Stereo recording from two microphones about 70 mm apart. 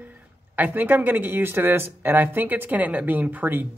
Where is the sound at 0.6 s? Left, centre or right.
Right.